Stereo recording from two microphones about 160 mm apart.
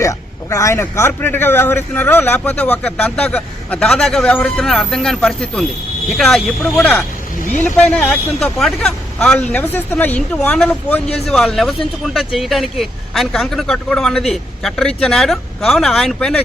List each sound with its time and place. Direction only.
0.0 s a man's voice: 20° left (ahead or behind); by 16.4 s 5° left (ahead or behind)